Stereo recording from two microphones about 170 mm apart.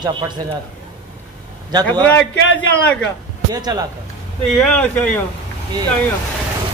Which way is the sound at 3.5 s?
25° right (ahead or behind).